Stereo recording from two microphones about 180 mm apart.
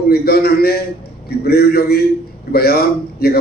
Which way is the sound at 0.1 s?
60° left (ahead or behind).